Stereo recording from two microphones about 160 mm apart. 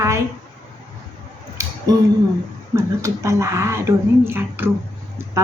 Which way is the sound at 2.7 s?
20° right (ahead or behind).